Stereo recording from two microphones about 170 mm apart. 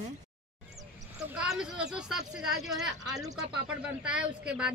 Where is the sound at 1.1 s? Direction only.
5° right (ahead or behind).